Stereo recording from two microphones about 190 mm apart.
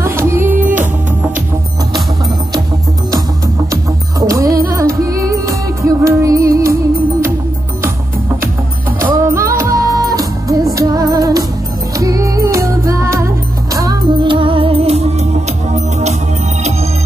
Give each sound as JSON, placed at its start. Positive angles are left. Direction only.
{"t": 0.0, "sound": "music", "side_deg": -15}
{"t": 4.3, "sound": "music", "side_deg": -15}
{"t": 9.1, "sound": "music", "side_deg": -15}